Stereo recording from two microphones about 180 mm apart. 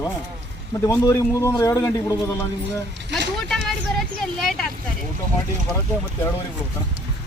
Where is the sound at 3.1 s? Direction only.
Centre (ahead or behind).